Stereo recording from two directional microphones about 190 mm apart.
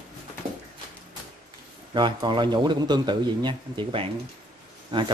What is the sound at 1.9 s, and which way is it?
A man's voice, 25° right (ahead or behind).